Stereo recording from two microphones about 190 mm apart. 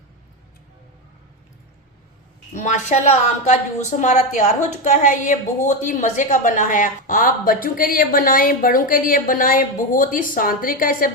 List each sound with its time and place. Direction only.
2.5 s a woman's voice: 40° left (ahead or behind)